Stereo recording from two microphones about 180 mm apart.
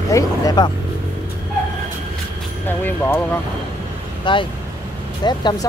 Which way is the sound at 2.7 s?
10° left (ahead or behind).